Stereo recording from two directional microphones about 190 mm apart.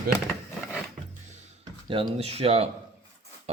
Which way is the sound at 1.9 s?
30° right (ahead or behind).